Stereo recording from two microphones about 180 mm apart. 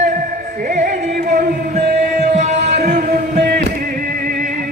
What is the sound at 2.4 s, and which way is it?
Music, 40° right (ahead or behind).